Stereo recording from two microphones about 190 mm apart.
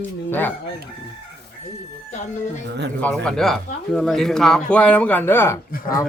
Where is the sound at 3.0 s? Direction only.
5° left (ahead or behind).